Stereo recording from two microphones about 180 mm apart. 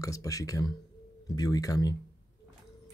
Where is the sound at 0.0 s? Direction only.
20° left (ahead or behind).